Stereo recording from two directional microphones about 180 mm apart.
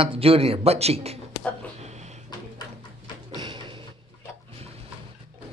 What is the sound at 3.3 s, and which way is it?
Music, 25° right (ahead or behind).